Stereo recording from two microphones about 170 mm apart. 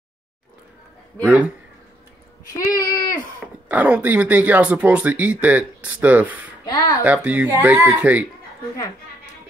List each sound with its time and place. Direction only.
1.2 s speech: 10° right (ahead or behind)
2.6 s a sound: 20° left (ahead or behind)
3.6 s speech: 10° right (ahead or behind)
6.7 s speech: 25° left (ahead or behind)
7.0 s speech: 10° right (ahead or behind)